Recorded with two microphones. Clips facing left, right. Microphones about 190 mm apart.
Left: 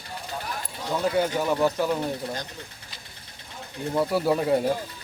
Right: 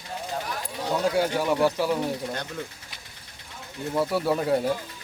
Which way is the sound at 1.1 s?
5° right (ahead or behind).